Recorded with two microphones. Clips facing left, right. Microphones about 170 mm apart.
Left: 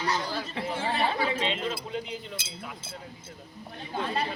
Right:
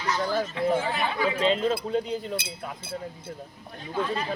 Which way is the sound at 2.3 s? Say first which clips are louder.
Right 7 dB; 55° right (ahead or behind).